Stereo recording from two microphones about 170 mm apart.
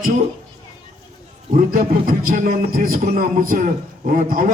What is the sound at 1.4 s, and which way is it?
A man's voice, 55° right (ahead or behind).